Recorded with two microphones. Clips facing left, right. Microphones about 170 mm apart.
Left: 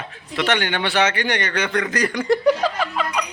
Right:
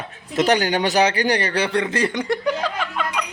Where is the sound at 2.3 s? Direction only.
5° left (ahead or behind).